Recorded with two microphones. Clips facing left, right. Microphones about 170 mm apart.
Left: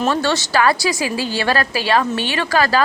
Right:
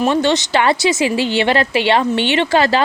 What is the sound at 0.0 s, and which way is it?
A woman's voice, 20° right (ahead or behind).